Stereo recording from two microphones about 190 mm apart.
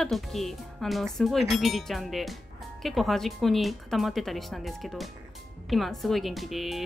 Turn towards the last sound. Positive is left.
turn(degrees=0)  # may be behind; listen again after turning